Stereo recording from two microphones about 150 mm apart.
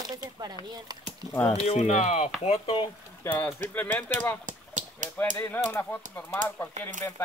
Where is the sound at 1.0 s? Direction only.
10° left (ahead or behind).